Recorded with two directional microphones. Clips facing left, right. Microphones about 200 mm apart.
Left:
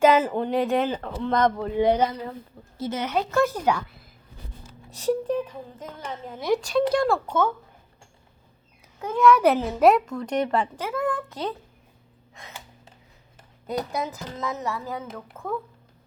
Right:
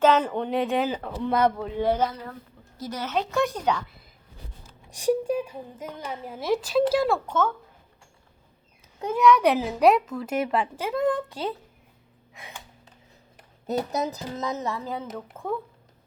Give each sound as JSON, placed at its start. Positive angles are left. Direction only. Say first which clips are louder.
{"t": 0.0, "sound": "speech", "louder": "left 2 dB", "side_deg": 10}
{"t": 1.7, "sound": "a woman's voice", "louder": "left 3 dB", "side_deg": 15}
{"t": 3.1, "sound": "speech", "louder": "left 2 dB", "side_deg": 5}
{"t": 4.9, "sound": "a woman's voice", "louder": "right 1 dB", "side_deg": -15}
{"t": 7.3, "sound": "speech", "louder": "left 1 dB", "side_deg": 10}
{"t": 9.1, "sound": "speech", "louder": "left 1 dB", "side_deg": 0}
{"t": 10.8, "sound": "a woman's voice", "louder": "right 3 dB", "side_deg": -20}
{"t": 12.3, "sound": "gasp", "louder": "right 1 dB", "side_deg": -10}
{"t": 13.9, "sound": "speech", "louder": "right 2 dB", "side_deg": -40}
{"t": 14.3, "sound": "speech", "louder": "left 1 dB", "side_deg": -20}